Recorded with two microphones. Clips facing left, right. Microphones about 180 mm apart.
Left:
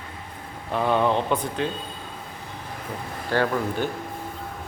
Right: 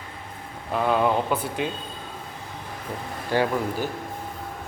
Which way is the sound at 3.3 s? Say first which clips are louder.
Even; 10° right (ahead or behind).